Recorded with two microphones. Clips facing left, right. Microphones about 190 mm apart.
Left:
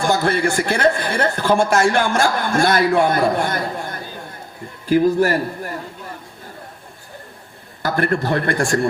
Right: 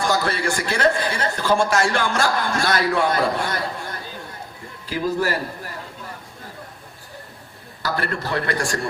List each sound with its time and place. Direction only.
0.2 s a man's voice: 55° left (ahead or behind)
7.8 s a man's voice: 50° left (ahead or behind)